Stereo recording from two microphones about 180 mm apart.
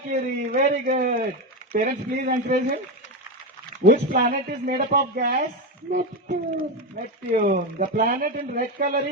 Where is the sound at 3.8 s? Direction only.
45° right (ahead or behind).